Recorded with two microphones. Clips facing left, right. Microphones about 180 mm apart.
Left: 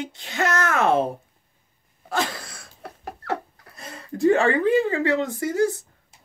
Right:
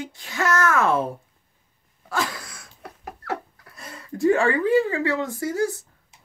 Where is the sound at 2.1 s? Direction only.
25° left (ahead or behind).